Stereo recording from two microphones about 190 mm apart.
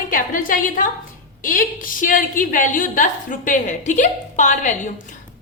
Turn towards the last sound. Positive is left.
turn(degrees=40)  # may be behind; listen again after turning